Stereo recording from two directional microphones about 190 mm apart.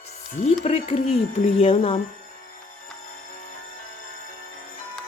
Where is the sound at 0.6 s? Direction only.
35° left (ahead or behind).